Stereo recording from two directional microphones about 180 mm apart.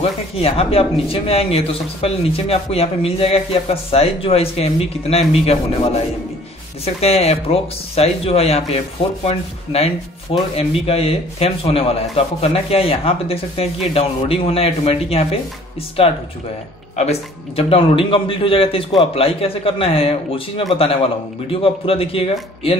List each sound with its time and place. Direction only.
0.4 s a man's voice: 35° left (ahead or behind)